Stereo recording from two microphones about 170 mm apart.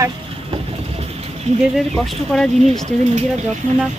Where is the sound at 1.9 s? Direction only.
5° left (ahead or behind).